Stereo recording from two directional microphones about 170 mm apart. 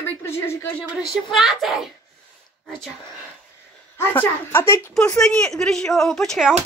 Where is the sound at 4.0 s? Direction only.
15° left (ahead or behind).